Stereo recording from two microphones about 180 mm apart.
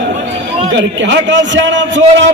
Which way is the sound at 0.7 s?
85° right.